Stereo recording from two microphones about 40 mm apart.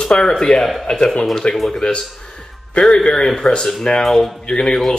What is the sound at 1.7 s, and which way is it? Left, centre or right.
Speech, centre.